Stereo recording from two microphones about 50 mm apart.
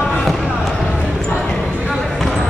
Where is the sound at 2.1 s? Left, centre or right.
Centre.